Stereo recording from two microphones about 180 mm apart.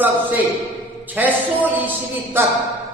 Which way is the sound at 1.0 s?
10° right (ahead or behind).